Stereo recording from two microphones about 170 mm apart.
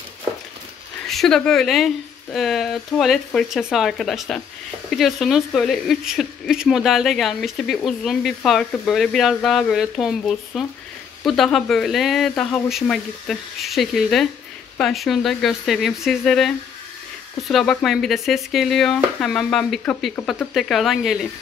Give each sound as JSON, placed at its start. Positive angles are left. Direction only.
{"t": 1.0, "sound": "speech", "side_deg": 0}